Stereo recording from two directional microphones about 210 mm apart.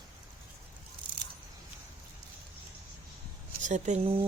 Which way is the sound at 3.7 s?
35° right (ahead or behind).